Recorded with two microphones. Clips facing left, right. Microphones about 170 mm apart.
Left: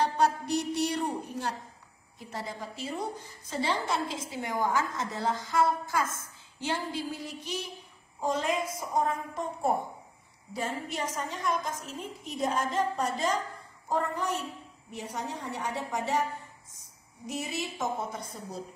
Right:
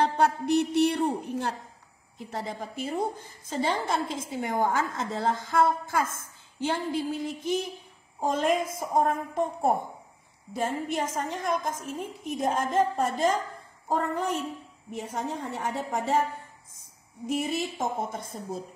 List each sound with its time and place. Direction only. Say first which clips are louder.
0.0 s a woman's voice: right 2 dB; 55° right (ahead or behind)
17.3 s a woman's voice: right 6 dB; 55° right (ahead or behind)